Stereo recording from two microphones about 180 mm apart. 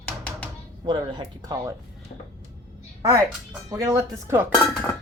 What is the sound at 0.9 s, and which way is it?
Speech, 25° right (ahead or behind).